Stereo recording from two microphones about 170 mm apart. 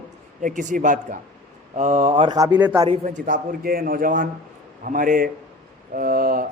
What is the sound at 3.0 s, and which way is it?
Speech, 50° right (ahead or behind).